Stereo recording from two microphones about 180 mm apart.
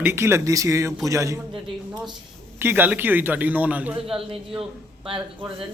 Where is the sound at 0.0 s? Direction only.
15° right (ahead or behind).